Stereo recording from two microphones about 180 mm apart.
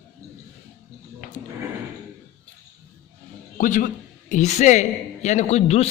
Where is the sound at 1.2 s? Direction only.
45° left (ahead or behind).